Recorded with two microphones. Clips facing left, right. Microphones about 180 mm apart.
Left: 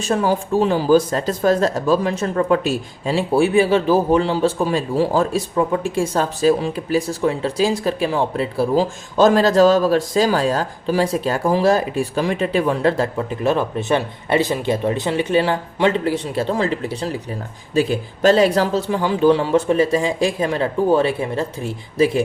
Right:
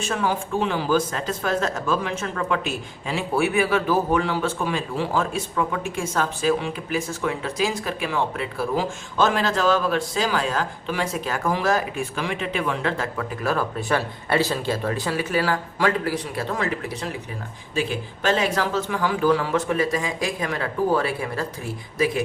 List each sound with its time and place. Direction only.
0.0 s speech: 35° left (ahead or behind)